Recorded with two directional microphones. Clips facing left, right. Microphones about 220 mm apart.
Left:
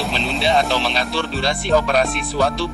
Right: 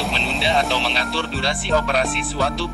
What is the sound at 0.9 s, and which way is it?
Music, 45° left (ahead or behind).